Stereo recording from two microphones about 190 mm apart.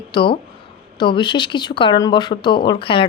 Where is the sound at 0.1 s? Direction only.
25° left (ahead or behind).